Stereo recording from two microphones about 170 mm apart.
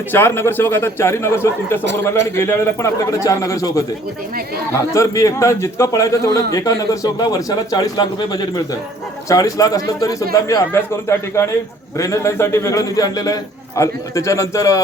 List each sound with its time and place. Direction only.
0.1 s a man's voice: 15° left (ahead or behind)
1.8 s a man's voice: 90° right
2.0 s a man's voice: 15° left (ahead or behind)